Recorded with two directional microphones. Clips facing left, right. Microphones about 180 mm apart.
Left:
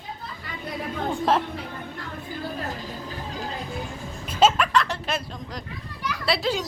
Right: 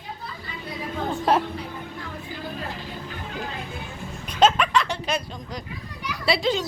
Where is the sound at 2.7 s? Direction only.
35° left (ahead or behind).